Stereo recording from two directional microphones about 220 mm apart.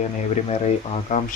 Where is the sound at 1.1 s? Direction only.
35° left (ahead or behind).